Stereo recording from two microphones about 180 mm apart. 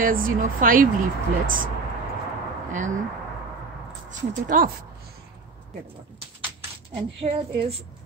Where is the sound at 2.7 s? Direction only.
45° right (ahead or behind).